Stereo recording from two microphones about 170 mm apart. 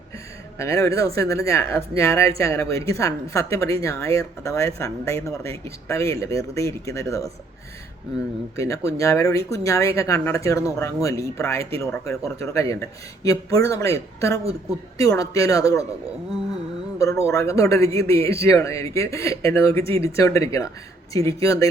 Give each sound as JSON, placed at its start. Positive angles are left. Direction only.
{"t": 0.6, "sound": "speech", "side_deg": 20}
{"t": 8.5, "sound": "speech", "side_deg": 20}
{"t": 17.0, "sound": "speech", "side_deg": 20}